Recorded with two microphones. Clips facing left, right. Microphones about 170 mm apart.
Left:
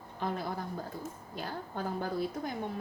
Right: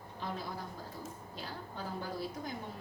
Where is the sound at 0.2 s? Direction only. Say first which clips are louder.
Left 6 dB; 55° left (ahead or behind).